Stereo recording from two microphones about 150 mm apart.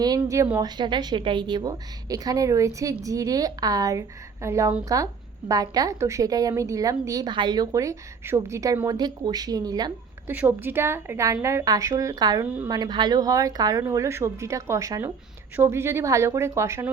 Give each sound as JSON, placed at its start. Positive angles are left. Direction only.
{"t": 0.0, "sound": "a woman's voice", "side_deg": -25}
{"t": 10.2, "sound": "a woman's voice", "side_deg": -15}